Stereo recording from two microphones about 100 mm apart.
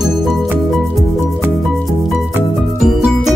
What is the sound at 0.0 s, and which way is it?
Music, centre (ahead or behind).